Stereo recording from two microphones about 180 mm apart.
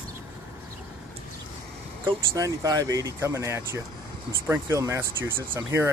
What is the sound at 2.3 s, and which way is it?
Speech, 20° right (ahead or behind).